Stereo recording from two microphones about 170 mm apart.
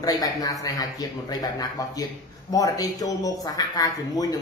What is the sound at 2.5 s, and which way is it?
Speech, 20° left (ahead or behind).